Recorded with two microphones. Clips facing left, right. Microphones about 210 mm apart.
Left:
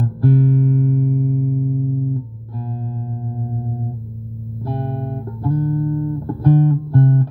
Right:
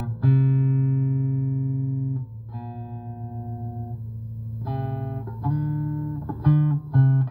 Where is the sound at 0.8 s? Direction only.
45° left (ahead or behind).